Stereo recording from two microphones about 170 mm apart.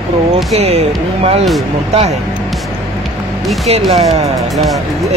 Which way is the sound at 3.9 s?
40° right (ahead or behind).